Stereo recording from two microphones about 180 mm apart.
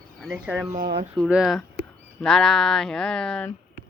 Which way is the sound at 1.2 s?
Centre (ahead or behind).